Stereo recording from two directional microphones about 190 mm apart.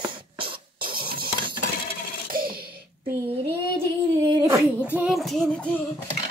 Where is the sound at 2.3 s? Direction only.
50° right (ahead or behind).